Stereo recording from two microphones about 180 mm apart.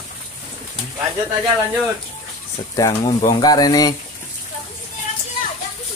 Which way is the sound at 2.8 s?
15° left (ahead or behind).